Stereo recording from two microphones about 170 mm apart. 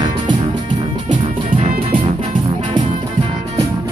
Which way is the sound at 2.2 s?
30° right (ahead or behind).